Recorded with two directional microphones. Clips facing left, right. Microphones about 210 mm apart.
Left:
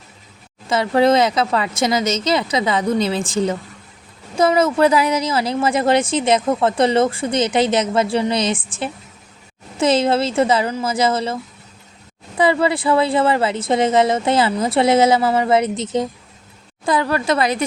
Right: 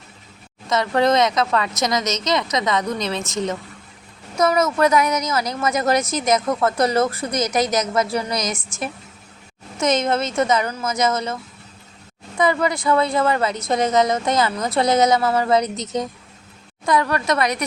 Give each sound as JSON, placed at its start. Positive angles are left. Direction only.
{"t": 0.7, "sound": "speech", "side_deg": 30}
{"t": 12.4, "sound": "speech", "side_deg": 30}